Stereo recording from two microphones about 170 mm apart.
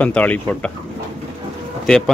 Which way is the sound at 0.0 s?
10° left (ahead or behind).